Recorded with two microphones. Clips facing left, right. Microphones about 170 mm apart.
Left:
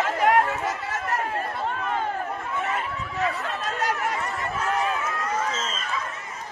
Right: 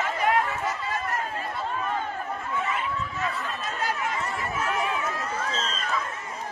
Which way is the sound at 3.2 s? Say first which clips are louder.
Left 8 dB; 70° left (ahead or behind).